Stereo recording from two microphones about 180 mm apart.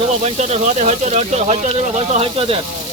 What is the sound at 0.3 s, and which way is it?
Speech, 40° right (ahead or behind).